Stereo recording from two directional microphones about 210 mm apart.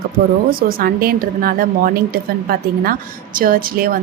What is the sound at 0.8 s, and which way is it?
A woman's voice, 45° right (ahead or behind).